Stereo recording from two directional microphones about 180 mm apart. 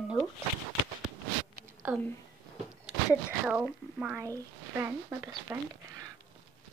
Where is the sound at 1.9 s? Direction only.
5° right (ahead or behind).